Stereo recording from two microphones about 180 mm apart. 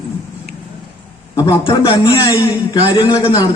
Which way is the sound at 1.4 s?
30° left (ahead or behind).